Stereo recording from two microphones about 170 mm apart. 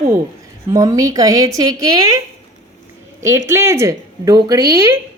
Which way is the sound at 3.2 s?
15° right (ahead or behind).